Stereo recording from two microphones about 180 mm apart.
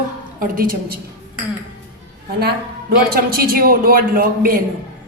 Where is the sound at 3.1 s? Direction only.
55° right (ahead or behind).